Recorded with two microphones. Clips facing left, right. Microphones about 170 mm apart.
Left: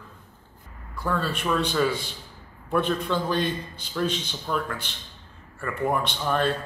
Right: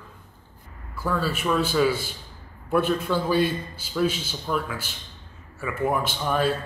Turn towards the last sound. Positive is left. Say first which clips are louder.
# right 1 dB
turn(degrees=-5)  # may be behind; listen again after turning